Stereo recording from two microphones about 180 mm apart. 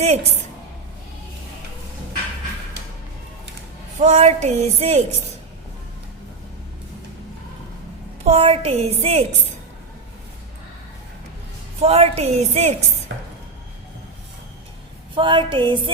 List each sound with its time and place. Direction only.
0.0 s child singing: 35° right (ahead or behind)
4.0 s child singing: 40° right (ahead or behind)
8.2 s child singing: 35° right (ahead or behind)
11.8 s child singing: 35° right (ahead or behind)
13.1 s a sound: 75° right (ahead or behind)
15.1 s a sound: 25° right (ahead or behind)